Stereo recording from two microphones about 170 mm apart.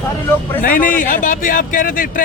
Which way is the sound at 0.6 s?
55° left (ahead or behind).